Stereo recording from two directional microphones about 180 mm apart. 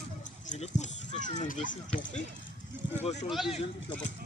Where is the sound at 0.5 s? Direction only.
40° left (ahead or behind).